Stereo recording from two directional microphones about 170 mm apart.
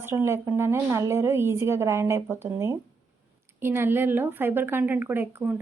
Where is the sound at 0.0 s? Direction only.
15° right (ahead or behind).